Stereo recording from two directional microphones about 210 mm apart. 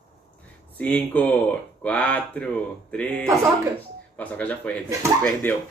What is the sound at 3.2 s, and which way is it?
Speech, 15° right (ahead or behind).